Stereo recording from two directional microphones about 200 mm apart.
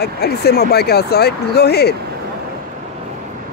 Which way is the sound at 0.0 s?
55° left (ahead or behind).